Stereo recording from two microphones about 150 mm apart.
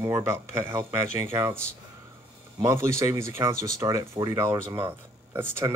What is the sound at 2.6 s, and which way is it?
Speech, 20° right (ahead or behind).